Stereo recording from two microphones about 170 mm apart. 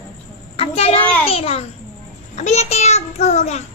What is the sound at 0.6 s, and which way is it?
A child's voice, 35° left (ahead or behind).